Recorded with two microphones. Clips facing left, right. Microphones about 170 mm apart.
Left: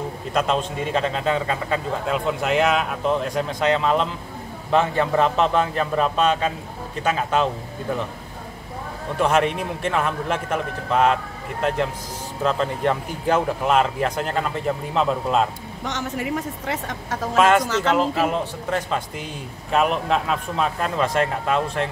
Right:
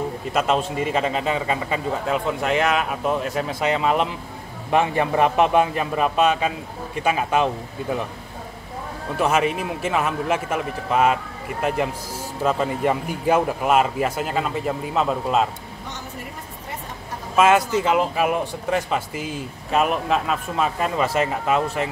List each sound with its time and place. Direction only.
0.3 s a man's voice: 5° right (ahead or behind)
9.2 s a man's voice: 5° right (ahead or behind)
15.8 s speech: 90° left
17.4 s a man's voice: 5° right (ahead or behind)
17.6 s speech: 80° left
17.9 s speech: 10° right (ahead or behind)